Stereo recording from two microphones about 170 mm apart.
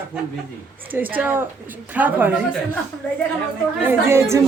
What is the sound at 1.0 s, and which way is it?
Speech, 10° right (ahead or behind).